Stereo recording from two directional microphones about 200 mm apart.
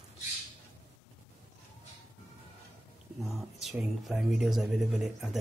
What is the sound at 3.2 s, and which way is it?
Speech, centre (ahead or behind).